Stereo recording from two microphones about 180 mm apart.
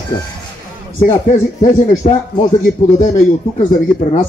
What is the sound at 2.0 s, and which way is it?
Speech, 35° left (ahead or behind).